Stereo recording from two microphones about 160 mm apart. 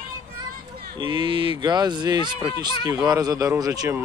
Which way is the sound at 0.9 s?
30° right (ahead or behind).